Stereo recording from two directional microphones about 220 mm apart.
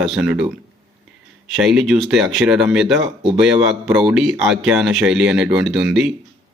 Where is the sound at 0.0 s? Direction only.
Centre (ahead or behind).